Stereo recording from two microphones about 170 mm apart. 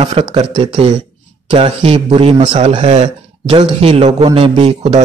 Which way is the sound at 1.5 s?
35° right (ahead or behind).